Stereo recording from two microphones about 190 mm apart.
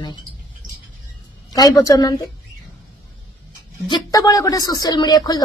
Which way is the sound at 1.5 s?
20° left (ahead or behind).